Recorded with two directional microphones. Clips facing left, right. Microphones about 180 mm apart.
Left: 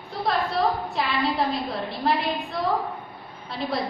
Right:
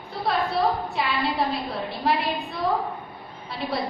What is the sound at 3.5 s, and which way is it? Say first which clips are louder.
Speech: left 1 dB; centre (ahead or behind).